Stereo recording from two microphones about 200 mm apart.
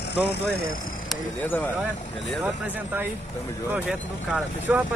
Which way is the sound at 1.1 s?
10° left (ahead or behind).